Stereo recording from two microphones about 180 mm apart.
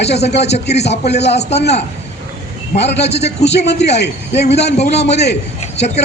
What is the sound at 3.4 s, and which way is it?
A man's voice, 70° left (ahead or behind).